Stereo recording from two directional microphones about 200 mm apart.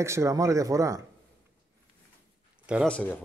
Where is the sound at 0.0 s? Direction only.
15° right (ahead or behind).